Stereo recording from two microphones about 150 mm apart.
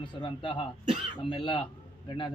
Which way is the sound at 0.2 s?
35° left (ahead or behind).